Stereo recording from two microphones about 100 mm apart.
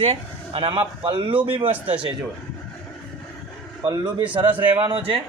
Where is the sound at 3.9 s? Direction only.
40° right (ahead or behind).